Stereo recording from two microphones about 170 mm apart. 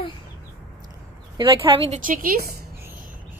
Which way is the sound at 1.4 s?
30° right (ahead or behind).